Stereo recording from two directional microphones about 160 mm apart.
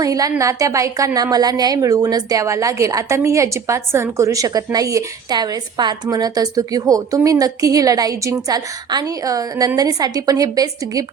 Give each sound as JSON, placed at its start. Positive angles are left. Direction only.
{"t": 0.0, "sound": "a woman's voice", "side_deg": -20}